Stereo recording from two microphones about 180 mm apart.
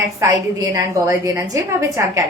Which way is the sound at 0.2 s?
15° right (ahead or behind).